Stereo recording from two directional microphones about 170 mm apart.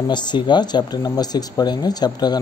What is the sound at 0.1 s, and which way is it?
Speech, 25° left (ahead or behind).